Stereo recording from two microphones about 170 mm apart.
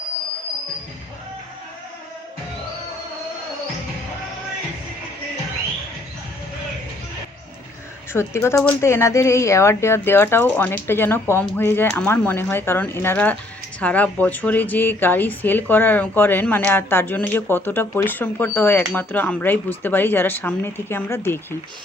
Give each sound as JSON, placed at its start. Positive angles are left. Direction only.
{"t": 8.1, "sound": "a woman's voice", "side_deg": 15}